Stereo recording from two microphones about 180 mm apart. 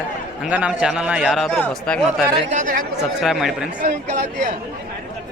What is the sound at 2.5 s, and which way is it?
Speech, 45° right (ahead or behind).